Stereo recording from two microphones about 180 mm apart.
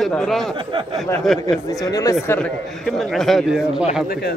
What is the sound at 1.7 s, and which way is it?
Speech, 20° left (ahead or behind).